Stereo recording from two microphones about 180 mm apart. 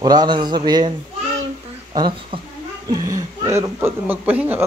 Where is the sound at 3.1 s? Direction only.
15° right (ahead or behind).